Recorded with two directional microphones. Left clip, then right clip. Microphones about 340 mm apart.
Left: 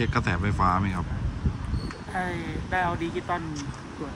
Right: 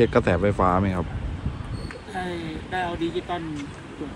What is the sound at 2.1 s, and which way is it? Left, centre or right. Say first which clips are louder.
Speech: even; left.